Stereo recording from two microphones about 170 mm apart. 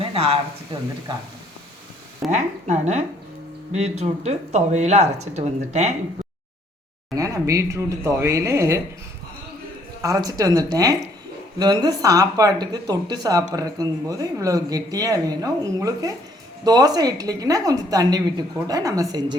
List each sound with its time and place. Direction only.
0.0 s speech: 35° right (ahead or behind)
2.3 s speech: 45° right (ahead or behind)
7.2 s speech: 20° right (ahead or behind)
10.0 s a woman's voice: 20° right (ahead or behind)